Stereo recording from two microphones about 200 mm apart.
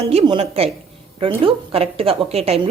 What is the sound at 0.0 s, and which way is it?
A woman's voice, 30° right (ahead or behind).